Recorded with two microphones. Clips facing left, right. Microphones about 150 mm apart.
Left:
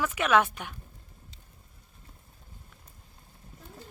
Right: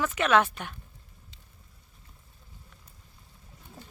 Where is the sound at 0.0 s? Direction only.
10° left (ahead or behind).